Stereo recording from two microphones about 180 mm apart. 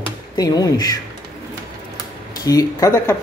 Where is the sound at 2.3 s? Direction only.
20° left (ahead or behind).